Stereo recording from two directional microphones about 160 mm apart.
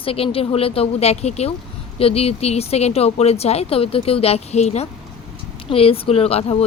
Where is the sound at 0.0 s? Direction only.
35° left (ahead or behind).